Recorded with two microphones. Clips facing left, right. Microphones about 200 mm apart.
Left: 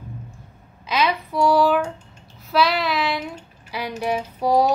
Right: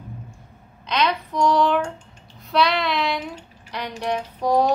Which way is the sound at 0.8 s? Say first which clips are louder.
Left 1 dB; 5° left (ahead or behind).